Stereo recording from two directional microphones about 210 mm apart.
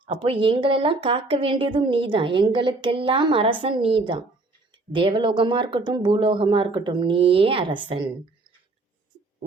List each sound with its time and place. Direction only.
0.0 s a woman's voice: 25° right (ahead or behind)